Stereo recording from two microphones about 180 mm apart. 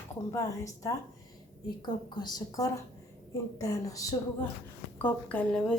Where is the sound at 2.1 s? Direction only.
20° left (ahead or behind).